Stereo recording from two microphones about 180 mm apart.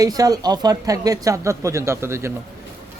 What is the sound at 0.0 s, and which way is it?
Speech, 20° right (ahead or behind).